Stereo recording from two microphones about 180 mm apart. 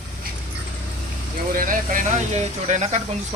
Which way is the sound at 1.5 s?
50° right (ahead or behind).